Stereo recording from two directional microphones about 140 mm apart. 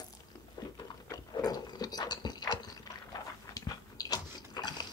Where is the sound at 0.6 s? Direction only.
30° left (ahead or behind).